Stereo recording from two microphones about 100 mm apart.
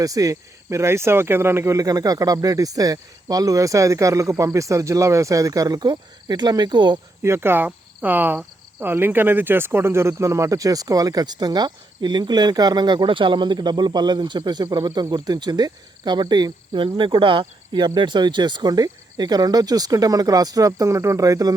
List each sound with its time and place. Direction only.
0.0 s speech: 35° right (ahead or behind)
7.2 s speech: 25° right (ahead or behind)